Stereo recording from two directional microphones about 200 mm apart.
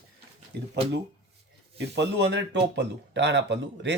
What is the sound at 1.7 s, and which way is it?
Speech, 60° right (ahead or behind).